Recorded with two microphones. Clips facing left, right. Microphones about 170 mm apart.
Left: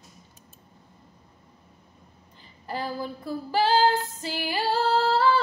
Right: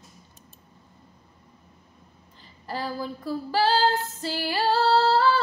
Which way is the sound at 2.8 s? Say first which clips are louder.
Right 3 dB; 15° left (ahead or behind).